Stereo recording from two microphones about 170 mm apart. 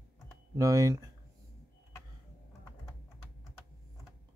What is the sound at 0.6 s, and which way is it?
Speech, 20° right (ahead or behind).